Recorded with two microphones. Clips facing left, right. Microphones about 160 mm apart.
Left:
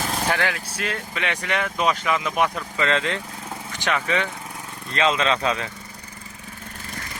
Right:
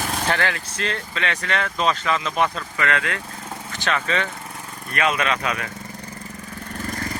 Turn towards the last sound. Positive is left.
turn(degrees=25)  # may be behind; listen again after turning